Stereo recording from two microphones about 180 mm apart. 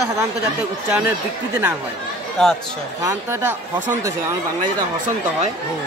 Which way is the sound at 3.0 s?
15° right (ahead or behind).